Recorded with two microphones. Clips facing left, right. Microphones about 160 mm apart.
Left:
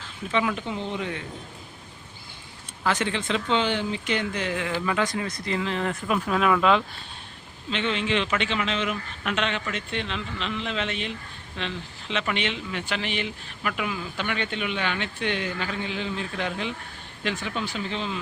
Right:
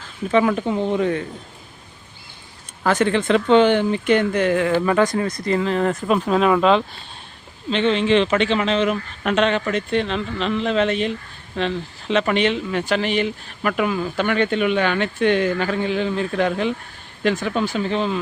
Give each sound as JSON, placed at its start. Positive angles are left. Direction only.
{"t": 0.3, "sound": "speech", "side_deg": -45}
{"t": 2.8, "sound": "speech", "side_deg": -50}
{"t": 6.1, "sound": "speech", "side_deg": -30}